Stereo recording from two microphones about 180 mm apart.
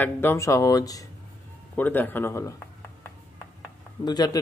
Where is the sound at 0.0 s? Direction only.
15° left (ahead or behind).